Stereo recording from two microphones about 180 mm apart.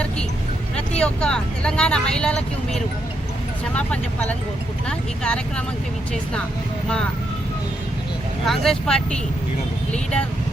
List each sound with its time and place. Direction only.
0.9 s speech: 5° left (ahead or behind)
8.4 s speech: centre (ahead or behind)